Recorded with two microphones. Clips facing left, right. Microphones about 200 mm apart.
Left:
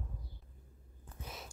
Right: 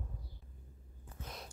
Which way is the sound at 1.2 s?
5° left (ahead or behind).